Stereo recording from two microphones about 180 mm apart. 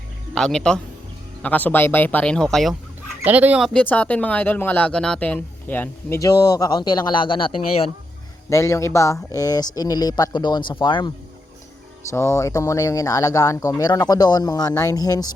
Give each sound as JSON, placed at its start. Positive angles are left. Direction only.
{"t": 0.3, "sound": "speech", "side_deg": 5}
{"t": 3.2, "sound": "speech", "side_deg": -10}
{"t": 8.4, "sound": "speech", "side_deg": 15}
{"t": 12.1, "sound": "speech", "side_deg": 15}